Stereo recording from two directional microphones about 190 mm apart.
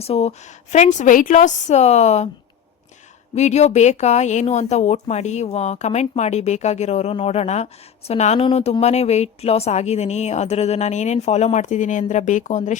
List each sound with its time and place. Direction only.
0.0 s speech: 35° left (ahead or behind)
3.3 s speech: 35° left (ahead or behind)